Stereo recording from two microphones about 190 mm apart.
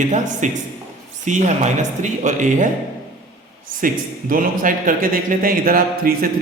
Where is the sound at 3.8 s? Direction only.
45° right (ahead or behind).